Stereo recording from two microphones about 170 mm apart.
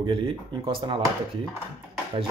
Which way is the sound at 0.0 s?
30° right (ahead or behind).